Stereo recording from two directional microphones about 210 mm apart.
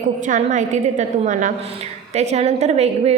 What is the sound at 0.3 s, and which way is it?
A woman's voice, 35° right (ahead or behind).